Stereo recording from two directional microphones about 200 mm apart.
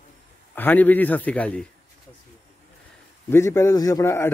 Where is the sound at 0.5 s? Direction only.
10° left (ahead or behind).